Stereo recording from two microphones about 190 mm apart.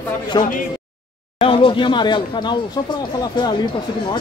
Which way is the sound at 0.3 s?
20° left (ahead or behind).